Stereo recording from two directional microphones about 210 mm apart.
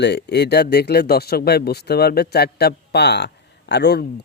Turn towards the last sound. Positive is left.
turn(degrees=55)  # may be behind; listen again after turning